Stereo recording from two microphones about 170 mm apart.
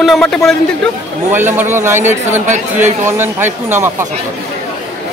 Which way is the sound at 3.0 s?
15° right (ahead or behind).